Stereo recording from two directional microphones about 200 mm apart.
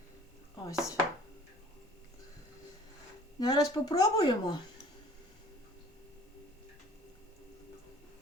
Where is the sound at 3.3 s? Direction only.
20° left (ahead or behind).